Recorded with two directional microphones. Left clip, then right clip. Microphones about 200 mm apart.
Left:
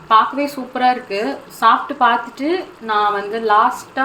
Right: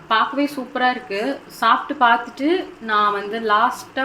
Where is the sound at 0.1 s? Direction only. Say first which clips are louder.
Left 5 dB; centre (ahead or behind).